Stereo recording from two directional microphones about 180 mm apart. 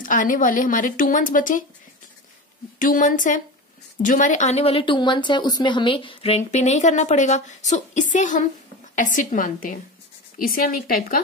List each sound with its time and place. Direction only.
0.0 s a woman's voice: 45° left (ahead or behind)
2.8 s a woman's voice: 50° left (ahead or behind)